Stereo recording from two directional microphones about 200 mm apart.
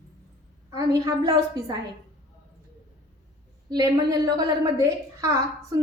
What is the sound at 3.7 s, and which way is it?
A woman's voice, 20° right (ahead or behind).